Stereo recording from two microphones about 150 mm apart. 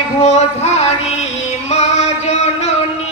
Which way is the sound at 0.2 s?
45° left (ahead or behind).